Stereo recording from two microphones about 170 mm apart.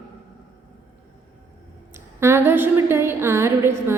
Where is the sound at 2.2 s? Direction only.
15° right (ahead or behind).